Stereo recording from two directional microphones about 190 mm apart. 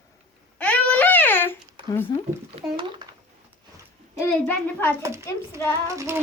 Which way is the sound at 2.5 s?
25° right (ahead or behind).